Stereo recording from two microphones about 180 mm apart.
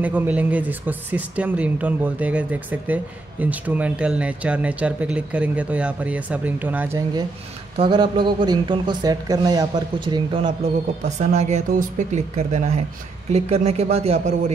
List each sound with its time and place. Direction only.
0.0 s speech: 10° right (ahead or behind)
7.7 s speech: 25° right (ahead or behind)